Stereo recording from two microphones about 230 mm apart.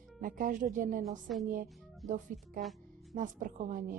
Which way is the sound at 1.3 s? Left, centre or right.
Centre.